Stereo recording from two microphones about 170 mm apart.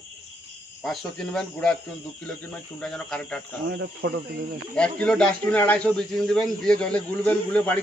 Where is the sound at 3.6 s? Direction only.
85° right.